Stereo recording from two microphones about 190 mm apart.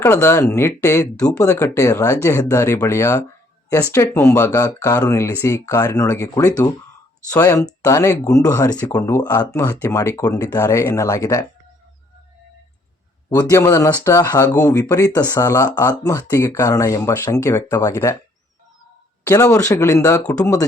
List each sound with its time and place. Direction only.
0.0 s speech: 15° left (ahead or behind)
1.1 s speech: 5° left (ahead or behind)
1.4 s speech: 15° left (ahead or behind)
9.1 s speech: 10° left (ahead or behind)
13.3 s speech: 15° left (ahead or behind)
19.2 s speech: 15° left (ahead or behind)